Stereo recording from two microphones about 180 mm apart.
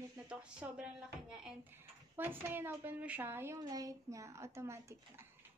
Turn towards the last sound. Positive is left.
turn(degrees=-15)  # may be behind; listen again after turning